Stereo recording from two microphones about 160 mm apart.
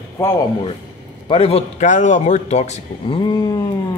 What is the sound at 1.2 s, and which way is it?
A man's voice, 35° left (ahead or behind).